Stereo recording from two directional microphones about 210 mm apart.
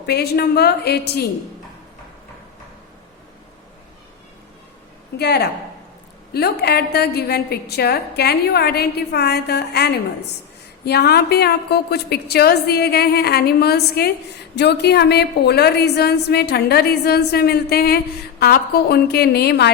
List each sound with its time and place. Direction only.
0.0 s a woman's voice: 50° left (ahead or behind)
5.1 s a woman's voice: 50° left (ahead or behind)